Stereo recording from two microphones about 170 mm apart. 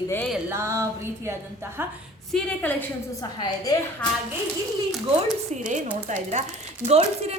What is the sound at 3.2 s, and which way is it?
Speech, 25° left (ahead or behind).